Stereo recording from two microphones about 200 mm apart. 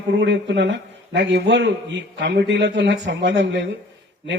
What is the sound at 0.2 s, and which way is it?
A man's voice, 60° right (ahead or behind).